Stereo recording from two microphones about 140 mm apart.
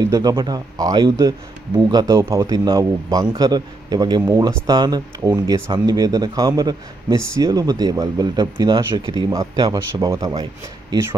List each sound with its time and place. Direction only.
0.0 s speech: 25° right (ahead or behind)